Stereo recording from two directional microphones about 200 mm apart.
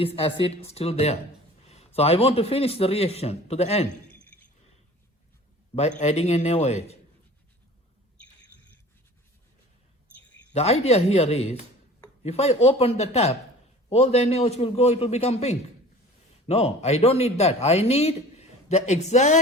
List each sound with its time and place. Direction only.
0.0 s a man's voice: 30° left (ahead or behind)
6.0 s a man's voice: 35° left (ahead or behind)
10.5 s a man's voice: 30° left (ahead or behind)